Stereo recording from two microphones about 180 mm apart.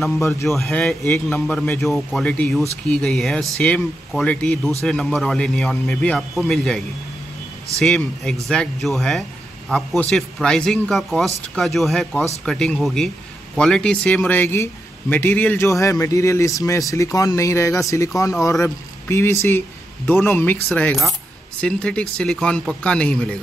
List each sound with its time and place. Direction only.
0.2 s a man's voice: 15° left (ahead or behind)
0.5 s a man's voice: 5° left (ahead or behind)
7.8 s a man's voice: centre (ahead or behind)